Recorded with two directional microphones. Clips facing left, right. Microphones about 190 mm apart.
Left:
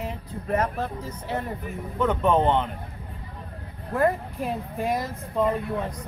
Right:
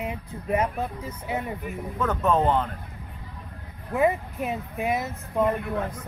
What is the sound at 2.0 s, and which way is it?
Speech, 25° left (ahead or behind).